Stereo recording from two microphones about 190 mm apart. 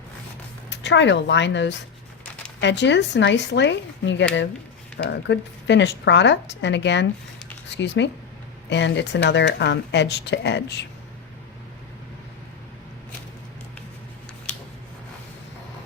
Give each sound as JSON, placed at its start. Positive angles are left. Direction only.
{"t": 0.7, "sound": "a woman's voice", "side_deg": 65}